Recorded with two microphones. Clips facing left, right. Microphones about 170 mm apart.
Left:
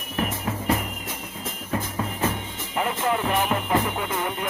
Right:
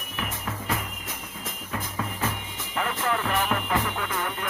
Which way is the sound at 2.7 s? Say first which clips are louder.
Left 3 dB; 20° left (ahead or behind).